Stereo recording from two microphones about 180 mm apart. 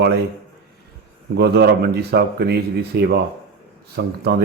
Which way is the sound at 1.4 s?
65° right (ahead or behind).